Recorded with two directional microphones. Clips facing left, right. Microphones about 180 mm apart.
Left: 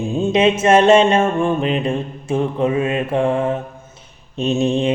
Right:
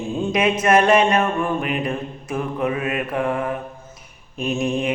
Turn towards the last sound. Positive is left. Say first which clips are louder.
# left 5 dB
turn(degrees=30)  # may be behind; listen again after turning